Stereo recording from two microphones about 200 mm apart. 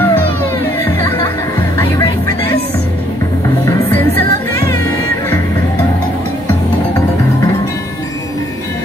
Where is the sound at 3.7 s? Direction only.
10° left (ahead or behind).